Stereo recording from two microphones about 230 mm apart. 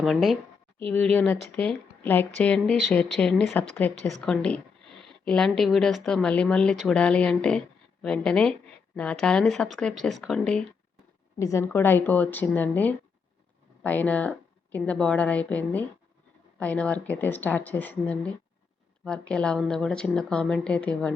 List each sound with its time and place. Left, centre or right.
0.0 s speech: centre
11.3 s speech: centre